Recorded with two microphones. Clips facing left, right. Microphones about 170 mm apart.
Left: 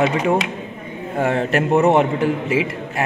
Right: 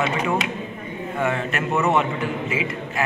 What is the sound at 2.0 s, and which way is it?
Speech, 65° left (ahead or behind).